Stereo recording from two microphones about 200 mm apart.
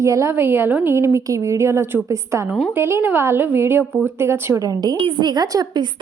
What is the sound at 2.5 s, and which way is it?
Speech, centre (ahead or behind).